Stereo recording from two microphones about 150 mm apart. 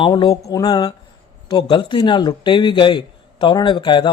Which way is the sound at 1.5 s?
30° left (ahead or behind).